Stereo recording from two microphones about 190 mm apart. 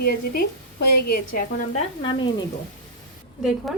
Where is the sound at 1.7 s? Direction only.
25° left (ahead or behind).